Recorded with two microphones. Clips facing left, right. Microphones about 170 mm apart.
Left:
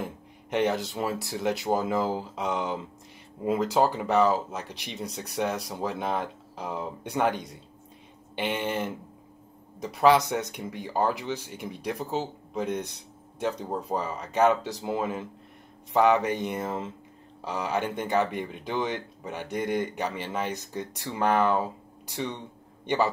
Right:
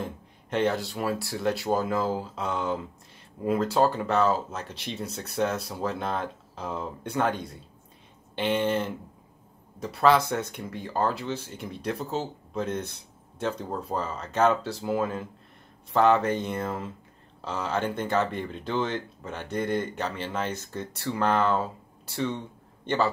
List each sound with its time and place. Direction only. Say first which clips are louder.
0.0 s speech: even; 15° left (ahead or behind)